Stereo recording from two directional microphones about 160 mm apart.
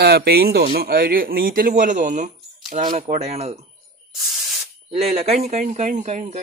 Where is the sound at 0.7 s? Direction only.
70° right (ahead or behind); by 3.6 s 40° right (ahead or behind).